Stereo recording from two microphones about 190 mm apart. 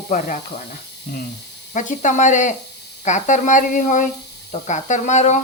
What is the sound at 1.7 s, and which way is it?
Speech, 40° left (ahead or behind).